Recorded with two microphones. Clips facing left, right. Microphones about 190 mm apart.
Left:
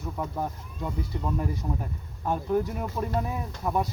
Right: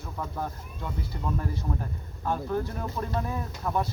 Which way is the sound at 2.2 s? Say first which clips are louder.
Left 3 dB; 15° left (ahead or behind).